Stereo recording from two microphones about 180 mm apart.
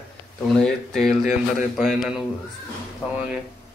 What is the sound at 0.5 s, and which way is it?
A man's voice, centre (ahead or behind).